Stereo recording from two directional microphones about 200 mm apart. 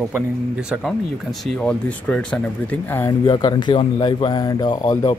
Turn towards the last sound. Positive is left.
turn(degrees=20)  # may be behind; listen again after turning